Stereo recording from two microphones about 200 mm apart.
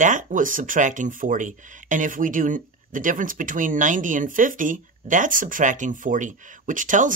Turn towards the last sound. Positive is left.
turn(degrees=-40)  # may be behind; listen again after turning